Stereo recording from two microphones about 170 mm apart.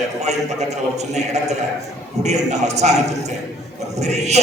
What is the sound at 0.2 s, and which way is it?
A man's voice, 40° right (ahead or behind).